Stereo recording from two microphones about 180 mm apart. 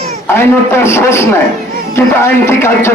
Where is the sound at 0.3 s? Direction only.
15° left (ahead or behind).